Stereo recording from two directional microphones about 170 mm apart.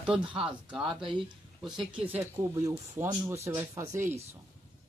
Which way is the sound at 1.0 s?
25° right (ahead or behind).